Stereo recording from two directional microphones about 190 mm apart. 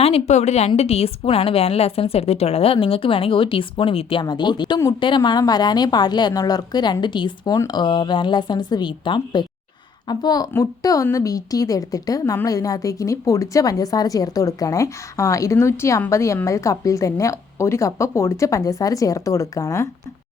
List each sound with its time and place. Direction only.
0.0 s a woman's voice: 35° left (ahead or behind); by 19.9 s 15° left (ahead or behind)